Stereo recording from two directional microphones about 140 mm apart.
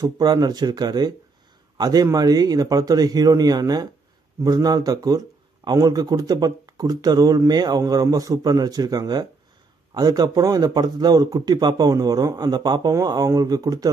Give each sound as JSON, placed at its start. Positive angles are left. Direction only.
{"t": 0.0, "sound": "a man's voice", "side_deg": -30}